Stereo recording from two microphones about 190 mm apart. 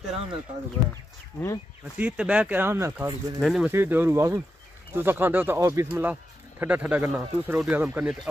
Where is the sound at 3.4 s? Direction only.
Centre (ahead or behind).